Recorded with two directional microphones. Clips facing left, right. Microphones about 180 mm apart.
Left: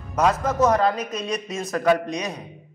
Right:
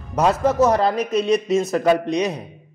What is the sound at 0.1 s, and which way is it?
A man's voice, 30° right (ahead or behind).